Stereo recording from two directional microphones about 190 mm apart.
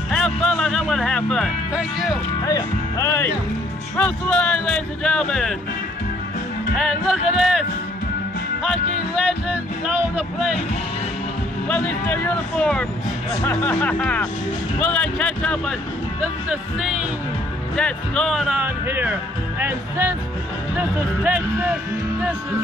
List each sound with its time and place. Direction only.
0.1 s speech: centre (ahead or behind)
2.4 s speech: 15° left (ahead or behind)
6.8 s speech: 5° right (ahead or behind)
9.1 s speech: 5° right (ahead or behind)
11.6 s speech: 5° left (ahead or behind); by 21.7 s 10° right (ahead or behind)